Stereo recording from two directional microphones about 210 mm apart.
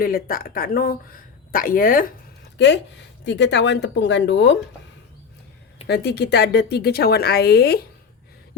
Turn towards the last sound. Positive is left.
turn(degrees=50)  # may be behind; listen again after turning